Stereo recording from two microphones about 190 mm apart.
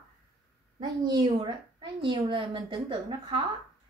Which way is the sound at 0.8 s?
20° right (ahead or behind).